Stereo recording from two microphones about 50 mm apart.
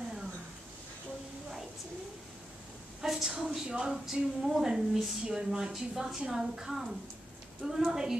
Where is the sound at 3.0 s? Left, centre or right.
Centre.